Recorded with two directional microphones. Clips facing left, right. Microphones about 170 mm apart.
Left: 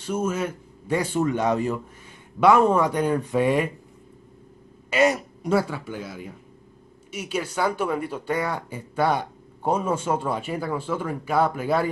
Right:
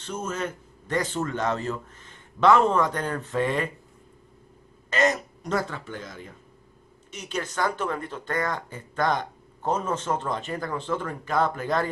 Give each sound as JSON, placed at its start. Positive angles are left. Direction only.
{"t": 0.0, "sound": "speech", "side_deg": 10}
{"t": 4.8, "sound": "speech", "side_deg": 10}